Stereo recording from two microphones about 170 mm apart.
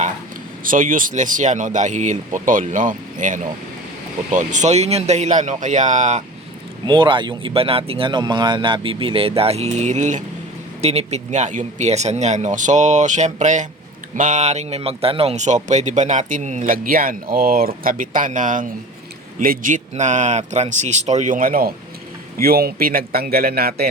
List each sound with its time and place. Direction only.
0.6 s a man's voice: 55° right (ahead or behind)
6.8 s a man's voice: 30° right (ahead or behind); by 23.9 s 65° right (ahead or behind)